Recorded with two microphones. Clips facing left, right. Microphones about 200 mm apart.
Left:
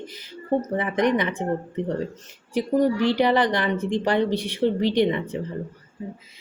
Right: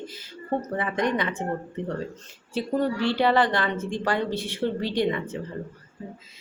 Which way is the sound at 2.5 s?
15° left (ahead or behind).